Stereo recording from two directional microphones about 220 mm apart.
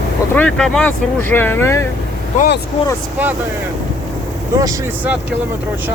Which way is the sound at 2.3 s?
40° left (ahead or behind).